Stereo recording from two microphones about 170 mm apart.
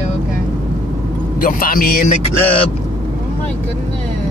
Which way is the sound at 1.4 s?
55° left (ahead or behind).